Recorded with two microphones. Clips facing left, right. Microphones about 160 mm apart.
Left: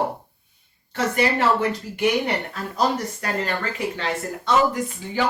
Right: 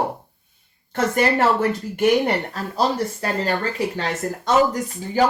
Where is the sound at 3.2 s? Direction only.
30° right (ahead or behind).